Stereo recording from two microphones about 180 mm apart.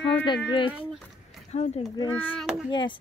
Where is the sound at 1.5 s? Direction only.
35° left (ahead or behind).